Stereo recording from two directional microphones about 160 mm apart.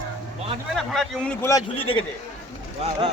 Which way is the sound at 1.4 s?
20° left (ahead or behind).